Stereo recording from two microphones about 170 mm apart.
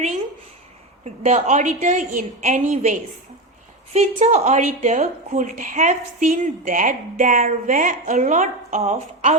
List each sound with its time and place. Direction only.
1.2 s a woman's voice: 40° right (ahead or behind)